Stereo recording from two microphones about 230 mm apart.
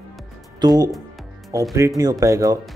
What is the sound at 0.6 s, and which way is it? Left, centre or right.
Speech, centre.